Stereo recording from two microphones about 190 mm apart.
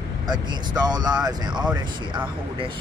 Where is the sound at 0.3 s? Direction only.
20° right (ahead or behind).